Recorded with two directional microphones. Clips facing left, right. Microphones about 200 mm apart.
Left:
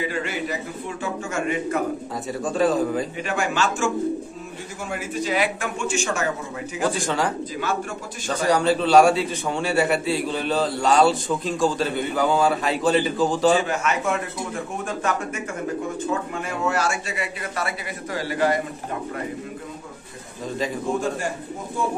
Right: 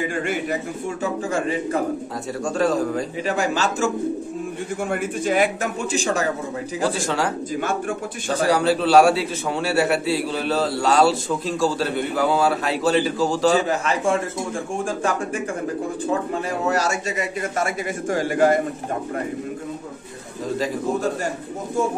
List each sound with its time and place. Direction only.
0.1 s a man's voice: 50° right (ahead or behind)
1.0 s a man's voice: 35° right (ahead or behind)
2.4 s a man's voice: centre (ahead or behind)
3.3 s a man's voice: 35° right (ahead or behind)
4.8 s a man's voice: 55° right (ahead or behind); by 6.2 s 35° right (ahead or behind)
6.9 s a man's voice: centre (ahead or behind)
8.5 s a man's voice: 5° right (ahead or behind)
13.6 s a man's voice: 35° right (ahead or behind)
16.6 s a man's voice: 40° right (ahead or behind)
20.4 s a man's voice: centre (ahead or behind)